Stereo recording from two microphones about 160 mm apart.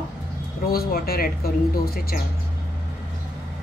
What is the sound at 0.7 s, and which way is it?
Speech, 70° left (ahead or behind).